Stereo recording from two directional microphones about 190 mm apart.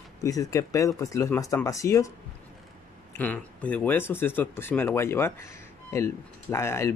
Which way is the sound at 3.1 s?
10° left (ahead or behind).